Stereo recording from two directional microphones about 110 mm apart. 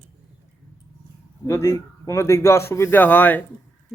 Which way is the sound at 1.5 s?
30° left (ahead or behind).